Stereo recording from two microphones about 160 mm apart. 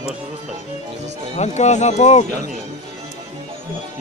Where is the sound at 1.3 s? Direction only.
45° left (ahead or behind).